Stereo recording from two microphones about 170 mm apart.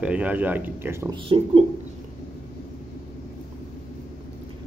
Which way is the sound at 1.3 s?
30° right (ahead or behind).